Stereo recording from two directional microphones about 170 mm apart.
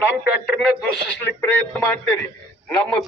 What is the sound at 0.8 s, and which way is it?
Speech, 5° left (ahead or behind).